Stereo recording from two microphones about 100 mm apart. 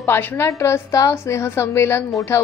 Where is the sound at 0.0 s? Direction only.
20° left (ahead or behind).